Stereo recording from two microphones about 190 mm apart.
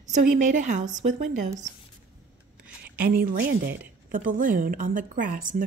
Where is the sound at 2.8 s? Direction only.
50° right (ahead or behind).